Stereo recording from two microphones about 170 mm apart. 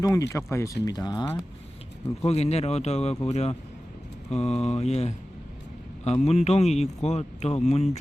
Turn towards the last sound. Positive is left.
turn(degrees=40)  # may be behind; listen again after turning